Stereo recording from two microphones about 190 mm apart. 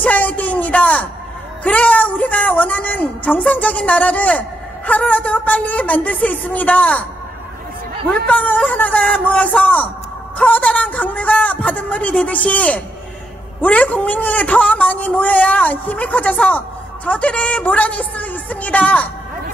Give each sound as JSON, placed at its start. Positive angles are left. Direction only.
{"t": 0.0, "sound": "a sound", "side_deg": 5}
{"t": 1.6, "sound": "a woman's voice", "side_deg": 10}
{"t": 8.3, "sound": "a woman's voice", "side_deg": 10}